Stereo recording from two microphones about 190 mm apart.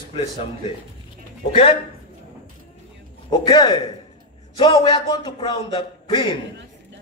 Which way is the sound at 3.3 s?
20° left (ahead or behind).